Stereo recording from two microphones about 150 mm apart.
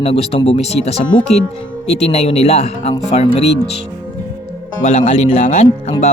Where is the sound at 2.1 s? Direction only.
45° left (ahead or behind).